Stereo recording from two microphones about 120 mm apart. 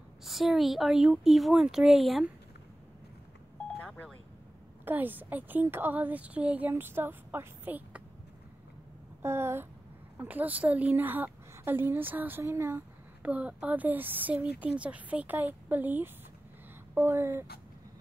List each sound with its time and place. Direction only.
0.2 s speech: centre (ahead or behind)
3.8 s a sound: 10° left (ahead or behind)
4.8 s a woman's voice: 15° right (ahead or behind)
9.2 s a woman's voice: 20° right (ahead or behind)